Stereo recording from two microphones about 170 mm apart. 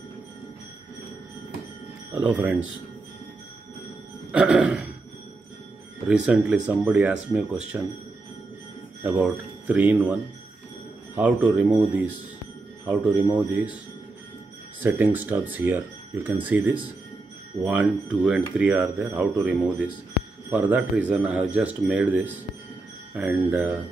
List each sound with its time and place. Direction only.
2.1 s speech: 10° right (ahead or behind)
4.3 s music: 5° right (ahead or behind)
6.0 s speech: 5° right (ahead or behind)
9.2 s speech: 10° right (ahead or behind)
14.8 s speech: 10° right (ahead or behind)